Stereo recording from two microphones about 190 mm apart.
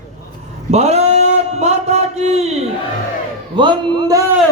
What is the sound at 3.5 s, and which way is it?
Speech, 25° right (ahead or behind).